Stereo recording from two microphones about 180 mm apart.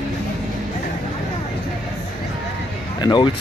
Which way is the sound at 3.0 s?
25° left (ahead or behind).